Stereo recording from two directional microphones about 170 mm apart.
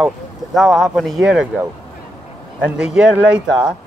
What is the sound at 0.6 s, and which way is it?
Speech, centre (ahead or behind).